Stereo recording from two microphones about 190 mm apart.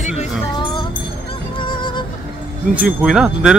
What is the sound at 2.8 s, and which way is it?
Speech, 5° right (ahead or behind).